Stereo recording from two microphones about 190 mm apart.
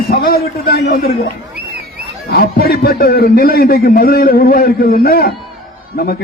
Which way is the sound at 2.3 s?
55° left (ahead or behind).